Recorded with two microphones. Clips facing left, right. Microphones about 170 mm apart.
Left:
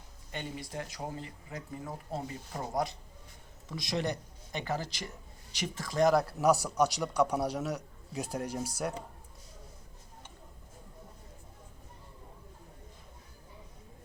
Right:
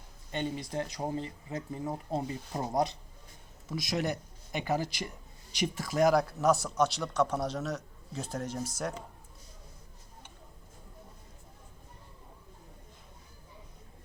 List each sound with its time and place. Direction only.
0.3 s speech: 25° right (ahead or behind)
3.7 s speech: 5° right (ahead or behind)